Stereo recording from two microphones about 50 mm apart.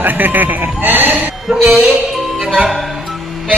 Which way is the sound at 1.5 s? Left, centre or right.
Centre.